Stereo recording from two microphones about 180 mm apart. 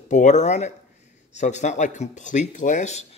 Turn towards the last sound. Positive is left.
turn(degrees=40)  # may be behind; listen again after turning